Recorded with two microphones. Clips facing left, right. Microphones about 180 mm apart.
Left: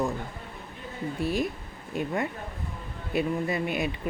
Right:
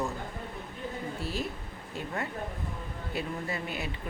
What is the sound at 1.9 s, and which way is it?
Speech, 15° left (ahead or behind).